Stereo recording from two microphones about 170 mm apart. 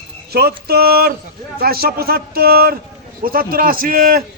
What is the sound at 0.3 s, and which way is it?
A man's voice, 65° right (ahead or behind).